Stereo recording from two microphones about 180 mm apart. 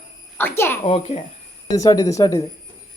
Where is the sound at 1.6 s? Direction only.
20° left (ahead or behind).